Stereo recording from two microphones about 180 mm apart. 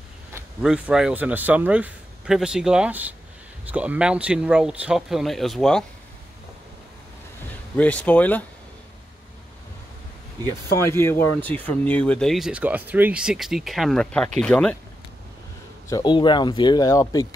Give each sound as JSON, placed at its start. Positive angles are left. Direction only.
{"t": 0.3, "sound": "speech", "side_deg": -5}
{"t": 7.7, "sound": "speech", "side_deg": 10}
{"t": 10.4, "sound": "speech", "side_deg": 15}
{"t": 15.9, "sound": "speech", "side_deg": 25}